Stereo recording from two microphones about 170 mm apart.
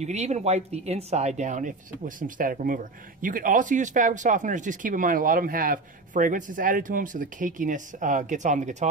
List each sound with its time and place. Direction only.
0.0 s speech: 40° right (ahead or behind)